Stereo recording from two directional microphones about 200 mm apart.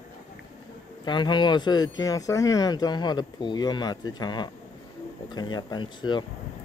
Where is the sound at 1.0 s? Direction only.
20° left (ahead or behind).